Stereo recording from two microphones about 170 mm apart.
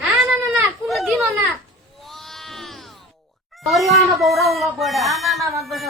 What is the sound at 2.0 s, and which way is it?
Sheep, centre (ahead or behind).